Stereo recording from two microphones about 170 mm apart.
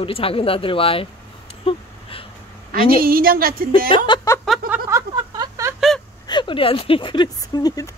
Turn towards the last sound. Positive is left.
turn(degrees=20)  # may be behind; listen again after turning